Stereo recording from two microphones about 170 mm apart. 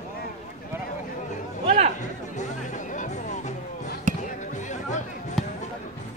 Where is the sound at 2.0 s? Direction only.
45° left (ahead or behind).